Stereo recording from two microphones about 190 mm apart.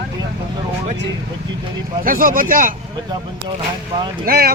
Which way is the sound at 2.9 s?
25° right (ahead or behind).